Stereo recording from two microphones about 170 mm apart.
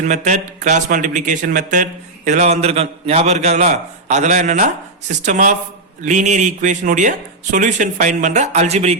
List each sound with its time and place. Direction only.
0.0 s speech: 45° right (ahead or behind)